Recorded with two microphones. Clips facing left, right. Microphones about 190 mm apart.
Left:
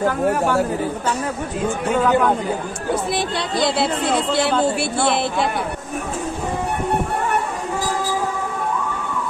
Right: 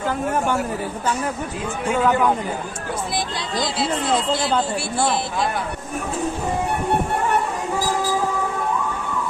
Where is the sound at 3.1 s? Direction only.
65° left (ahead or behind).